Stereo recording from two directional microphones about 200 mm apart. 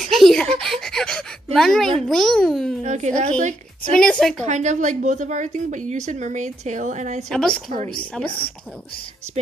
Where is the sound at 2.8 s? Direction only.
35° right (ahead or behind).